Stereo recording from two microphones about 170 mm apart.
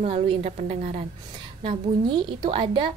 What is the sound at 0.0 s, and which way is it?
A woman's voice, 40° right (ahead or behind).